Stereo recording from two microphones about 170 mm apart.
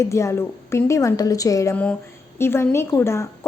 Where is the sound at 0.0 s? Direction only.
15° left (ahead or behind).